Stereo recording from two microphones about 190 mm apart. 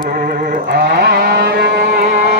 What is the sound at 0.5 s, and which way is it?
Music, 55° right (ahead or behind).